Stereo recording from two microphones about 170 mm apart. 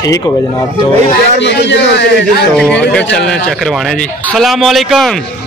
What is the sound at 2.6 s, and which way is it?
A man's voice, 5° left (ahead or behind).